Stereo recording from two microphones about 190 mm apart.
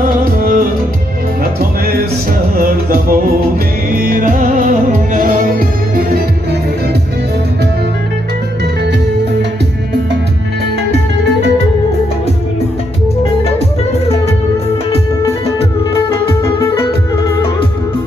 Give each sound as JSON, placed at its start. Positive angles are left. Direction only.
{"t": 0.2, "sound": "music", "side_deg": -50}
{"t": 16.1, "sound": "music", "side_deg": 15}